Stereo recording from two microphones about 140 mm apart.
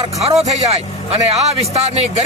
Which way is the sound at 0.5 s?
50° right (ahead or behind).